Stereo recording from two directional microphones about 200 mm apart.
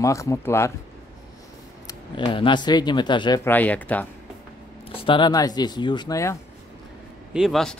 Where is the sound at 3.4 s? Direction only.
10° left (ahead or behind).